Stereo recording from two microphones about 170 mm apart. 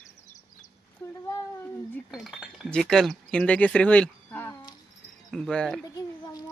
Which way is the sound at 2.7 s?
5° left (ahead or behind).